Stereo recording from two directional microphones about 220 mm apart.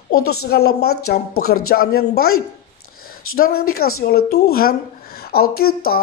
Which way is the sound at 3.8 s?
45° left (ahead or behind).